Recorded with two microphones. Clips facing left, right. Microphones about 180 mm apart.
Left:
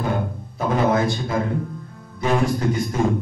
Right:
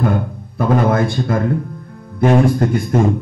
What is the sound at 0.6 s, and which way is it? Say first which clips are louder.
A man's voice: right 4 dB; 55° right (ahead or behind).